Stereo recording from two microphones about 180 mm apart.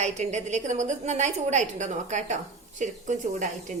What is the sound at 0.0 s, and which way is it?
A woman's voice, 40° right (ahead or behind).